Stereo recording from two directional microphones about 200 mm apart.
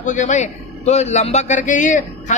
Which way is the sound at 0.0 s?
40° left (ahead or behind).